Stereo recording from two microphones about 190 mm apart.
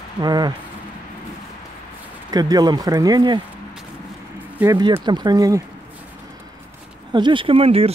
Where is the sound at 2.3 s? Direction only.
20° right (ahead or behind).